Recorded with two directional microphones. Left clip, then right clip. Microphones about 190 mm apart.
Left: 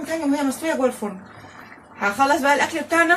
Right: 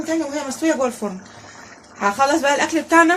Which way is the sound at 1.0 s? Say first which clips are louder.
Right 2 dB; 40° right (ahead or behind).